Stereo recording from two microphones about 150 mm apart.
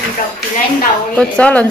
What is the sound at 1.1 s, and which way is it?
Speech, 10° left (ahead or behind).